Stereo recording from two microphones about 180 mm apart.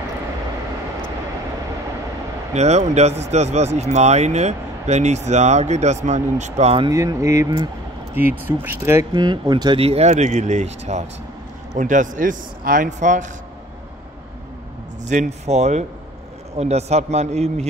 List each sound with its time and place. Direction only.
2.5 s speech: 40° right (ahead or behind)
6.9 s speech: 20° right (ahead or behind)
8.1 s speech: 10° right (ahead or behind)
9.1 s speech: 25° right (ahead or behind); by 13.3 s 45° right (ahead or behind)
15.0 s speech: 40° right (ahead or behind)